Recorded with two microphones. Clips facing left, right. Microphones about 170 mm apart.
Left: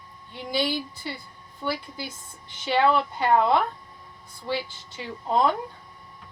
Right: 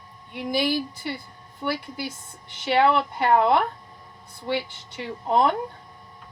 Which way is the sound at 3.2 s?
65° right (ahead or behind).